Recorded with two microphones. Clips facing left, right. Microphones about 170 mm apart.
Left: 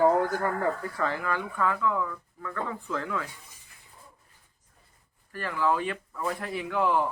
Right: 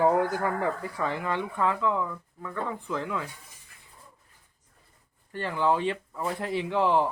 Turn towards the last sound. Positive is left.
turn(degrees=-25)  # may be behind; listen again after turning